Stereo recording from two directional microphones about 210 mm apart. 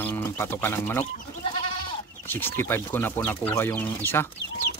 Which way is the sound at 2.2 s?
10° left (ahead or behind).